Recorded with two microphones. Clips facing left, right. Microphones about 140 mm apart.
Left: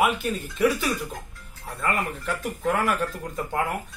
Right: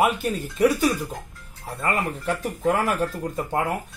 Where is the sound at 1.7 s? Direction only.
35° right (ahead or behind).